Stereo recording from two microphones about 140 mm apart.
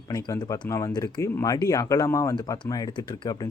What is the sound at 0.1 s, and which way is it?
Speech, 25° left (ahead or behind).